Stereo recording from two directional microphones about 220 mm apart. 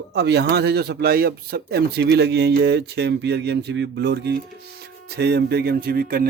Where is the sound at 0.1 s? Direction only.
50° right (ahead or behind).